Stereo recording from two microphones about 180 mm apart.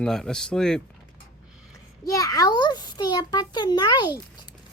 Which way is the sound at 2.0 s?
20° left (ahead or behind).